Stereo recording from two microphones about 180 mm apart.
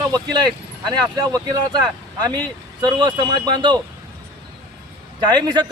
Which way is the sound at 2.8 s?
25° right (ahead or behind).